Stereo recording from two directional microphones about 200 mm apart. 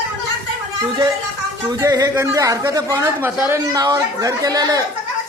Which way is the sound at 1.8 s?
15° right (ahead or behind).